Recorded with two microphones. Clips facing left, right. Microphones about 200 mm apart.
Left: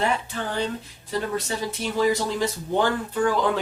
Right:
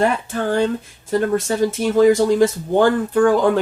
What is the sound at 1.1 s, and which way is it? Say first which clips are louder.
Speech: right 9 dB; 50° right (ahead or behind).